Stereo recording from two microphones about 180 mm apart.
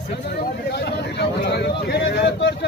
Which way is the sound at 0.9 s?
65° left (ahead or behind).